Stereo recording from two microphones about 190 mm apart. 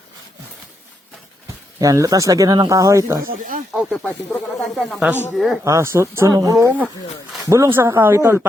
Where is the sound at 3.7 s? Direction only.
Centre (ahead or behind).